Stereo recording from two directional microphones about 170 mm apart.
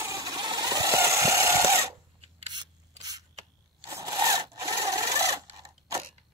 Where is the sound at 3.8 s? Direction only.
20° right (ahead or behind).